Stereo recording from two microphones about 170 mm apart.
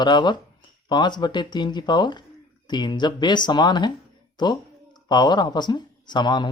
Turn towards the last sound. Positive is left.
turn(degrees=25)  # may be behind; listen again after turning